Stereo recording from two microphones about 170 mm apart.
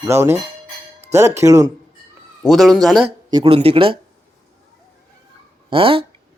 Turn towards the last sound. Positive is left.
turn(degrees=-30)  # may be behind; listen again after turning